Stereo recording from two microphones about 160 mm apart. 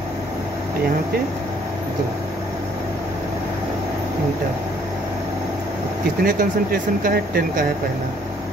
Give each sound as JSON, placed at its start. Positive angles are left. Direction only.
{"t": 6.2, "sound": "speech", "side_deg": -60}